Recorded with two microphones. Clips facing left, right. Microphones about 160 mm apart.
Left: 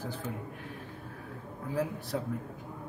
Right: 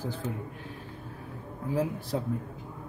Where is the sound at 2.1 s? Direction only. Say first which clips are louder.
Right 2 dB; 25° right (ahead or behind).